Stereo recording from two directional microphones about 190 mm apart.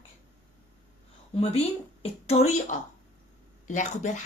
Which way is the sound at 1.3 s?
30° left (ahead or behind).